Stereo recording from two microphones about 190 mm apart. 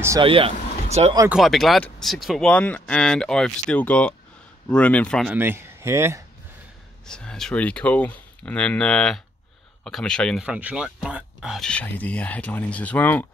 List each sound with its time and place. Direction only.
0.2 s speech: 30° right (ahead or behind)
1.3 s speech: centre (ahead or behind)
5.3 s speech: 10° right (ahead or behind)
7.1 s speech: 5° left (ahead or behind)